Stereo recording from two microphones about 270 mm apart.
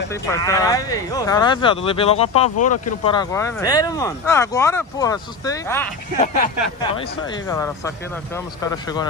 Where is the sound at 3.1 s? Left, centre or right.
Centre.